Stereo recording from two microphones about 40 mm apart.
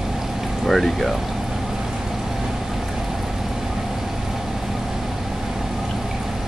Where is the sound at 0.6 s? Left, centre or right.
Centre.